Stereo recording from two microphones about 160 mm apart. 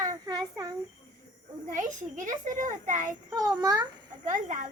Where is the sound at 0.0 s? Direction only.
20° right (ahead or behind).